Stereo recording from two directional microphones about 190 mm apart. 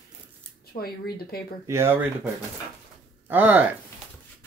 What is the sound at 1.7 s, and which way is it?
Speech, 15° right (ahead or behind).